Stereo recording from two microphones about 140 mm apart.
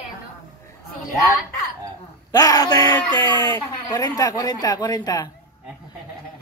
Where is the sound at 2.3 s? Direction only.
25° left (ahead or behind).